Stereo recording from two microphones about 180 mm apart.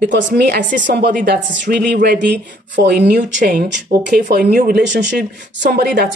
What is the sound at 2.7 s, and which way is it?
Speech, 70° right (ahead or behind).